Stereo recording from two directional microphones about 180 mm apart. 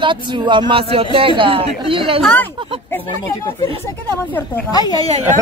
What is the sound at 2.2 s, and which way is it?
Speech, 5° left (ahead or behind).